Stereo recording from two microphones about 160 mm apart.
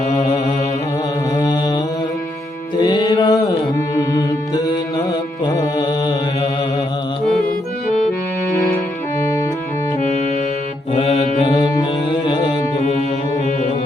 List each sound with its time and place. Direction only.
0.1 s mantra: 25° left (ahead or behind)
2.7 s music: 25° left (ahead or behind)
10.9 s mantra: 35° left (ahead or behind)
11.7 s music: 25° left (ahead or behind)